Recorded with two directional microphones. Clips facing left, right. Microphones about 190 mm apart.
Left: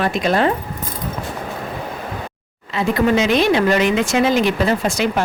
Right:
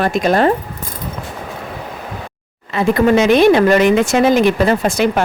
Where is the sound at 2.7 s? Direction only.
55° right (ahead or behind).